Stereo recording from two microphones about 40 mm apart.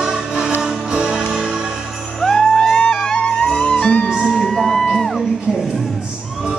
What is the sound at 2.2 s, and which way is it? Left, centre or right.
Music, centre.